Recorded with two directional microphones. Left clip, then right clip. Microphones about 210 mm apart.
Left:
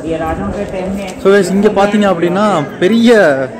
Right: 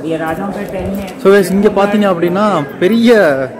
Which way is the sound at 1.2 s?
15° right (ahead or behind).